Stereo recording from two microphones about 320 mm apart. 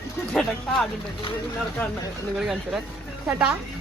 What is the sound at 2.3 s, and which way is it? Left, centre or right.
Speech, centre.